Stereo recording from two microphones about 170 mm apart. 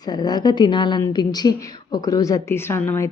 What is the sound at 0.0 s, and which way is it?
A woman's voice, 25° left (ahead or behind).